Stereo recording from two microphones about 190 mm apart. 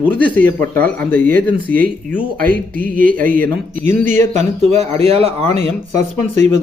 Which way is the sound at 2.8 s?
45° right (ahead or behind).